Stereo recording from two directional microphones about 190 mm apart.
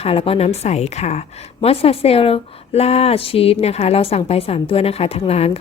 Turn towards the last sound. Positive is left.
turn(degrees=30)  # may be behind; listen again after turning